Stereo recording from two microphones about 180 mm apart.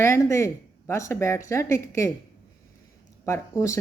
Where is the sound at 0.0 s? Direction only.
15° left (ahead or behind).